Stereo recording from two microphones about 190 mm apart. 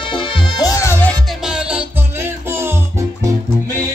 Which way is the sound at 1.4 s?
5° right (ahead or behind).